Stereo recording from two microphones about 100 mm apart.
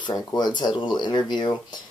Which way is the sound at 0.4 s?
50° left (ahead or behind).